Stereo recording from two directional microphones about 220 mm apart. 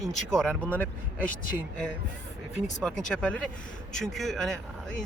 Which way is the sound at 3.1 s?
5° left (ahead or behind).